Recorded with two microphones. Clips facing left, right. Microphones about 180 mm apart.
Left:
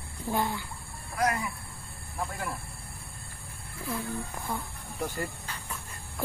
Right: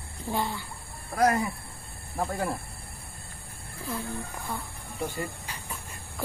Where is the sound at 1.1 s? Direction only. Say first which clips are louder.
Right 5 dB; 40° right (ahead or behind).